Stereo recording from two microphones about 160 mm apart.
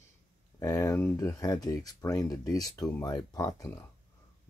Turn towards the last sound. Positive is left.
turn(degrees=20)  # may be behind; listen again after turning